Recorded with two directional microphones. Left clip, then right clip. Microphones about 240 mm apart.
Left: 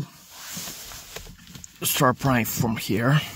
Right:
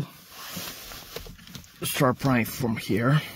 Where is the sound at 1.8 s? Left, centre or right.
Left.